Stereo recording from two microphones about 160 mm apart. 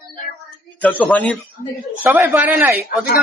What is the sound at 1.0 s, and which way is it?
Speech, 5° left (ahead or behind).